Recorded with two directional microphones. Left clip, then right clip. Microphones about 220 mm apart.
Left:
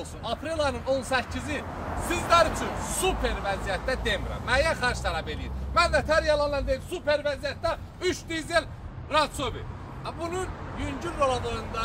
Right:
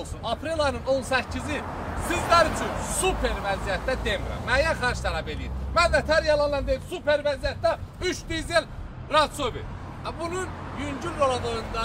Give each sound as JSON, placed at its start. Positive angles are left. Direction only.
{"t": 0.2, "sound": "speech", "side_deg": 0}
{"t": 2.5, "sound": "speech", "side_deg": -50}
{"t": 2.9, "sound": "speech", "side_deg": 0}